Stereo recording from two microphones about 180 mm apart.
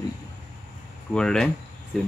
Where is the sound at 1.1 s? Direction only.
5° left (ahead or behind).